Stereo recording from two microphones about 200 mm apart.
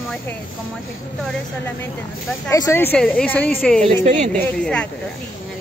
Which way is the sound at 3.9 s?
35° right (ahead or behind).